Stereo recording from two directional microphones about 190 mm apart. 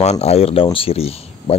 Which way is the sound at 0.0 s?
35° left (ahead or behind).